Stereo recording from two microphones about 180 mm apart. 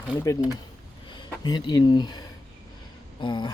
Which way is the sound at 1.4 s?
25° left (ahead or behind).